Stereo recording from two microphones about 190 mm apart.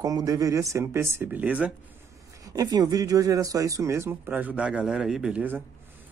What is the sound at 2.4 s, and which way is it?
Speech, 20° right (ahead or behind).